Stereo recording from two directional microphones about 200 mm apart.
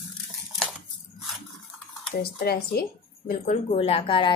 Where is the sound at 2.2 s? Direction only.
50° left (ahead or behind).